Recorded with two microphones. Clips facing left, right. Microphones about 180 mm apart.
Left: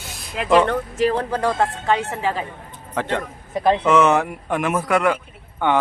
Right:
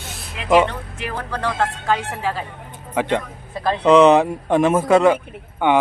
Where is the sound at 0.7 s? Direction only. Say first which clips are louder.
Left 10 dB; 40° left (ahead or behind).